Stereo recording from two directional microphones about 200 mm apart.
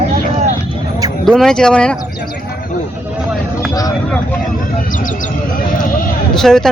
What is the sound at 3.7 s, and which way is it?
Vehicle, 15° left (ahead or behind).